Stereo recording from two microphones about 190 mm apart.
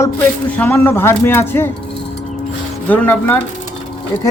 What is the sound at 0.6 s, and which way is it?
Speech, 10° left (ahead or behind).